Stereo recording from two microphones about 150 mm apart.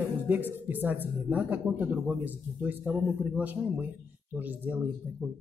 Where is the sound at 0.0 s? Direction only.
15° right (ahead or behind).